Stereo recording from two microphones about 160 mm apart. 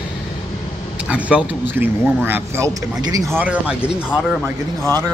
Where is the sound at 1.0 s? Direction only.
10° right (ahead or behind); by 3.3 s 25° right (ahead or behind).